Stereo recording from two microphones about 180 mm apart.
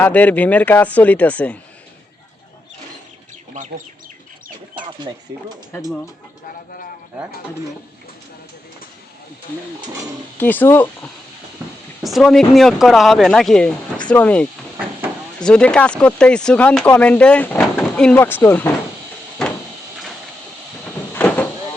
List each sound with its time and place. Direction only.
0.0 s speech: 10° left (ahead or behind)
3.5 s speech: 45° right (ahead or behind)
10.4 s speech: 10° left (ahead or behind)
15.4 s speech: 5° left (ahead or behind)
21.1 s vehicle: 10° left (ahead or behind)